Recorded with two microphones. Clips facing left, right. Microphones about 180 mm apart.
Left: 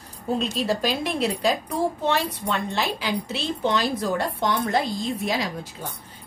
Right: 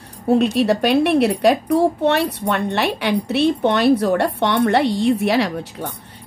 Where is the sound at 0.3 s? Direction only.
70° right (ahead or behind).